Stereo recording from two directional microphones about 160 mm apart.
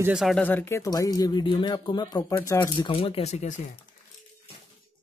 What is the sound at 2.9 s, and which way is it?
Speech, 35° left (ahead or behind).